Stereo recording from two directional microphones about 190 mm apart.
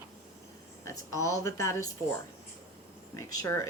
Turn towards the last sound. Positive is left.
turn(degrees=20)  # may be behind; listen again after turning